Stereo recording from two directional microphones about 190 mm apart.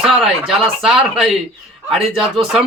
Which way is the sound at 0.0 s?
Centre (ahead or behind).